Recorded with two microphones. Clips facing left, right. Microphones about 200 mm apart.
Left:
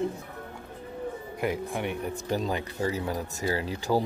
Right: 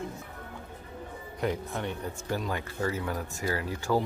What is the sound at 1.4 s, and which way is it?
Speech, 10° left (ahead or behind).